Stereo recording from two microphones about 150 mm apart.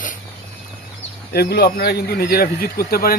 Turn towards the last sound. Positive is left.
turn(degrees=85)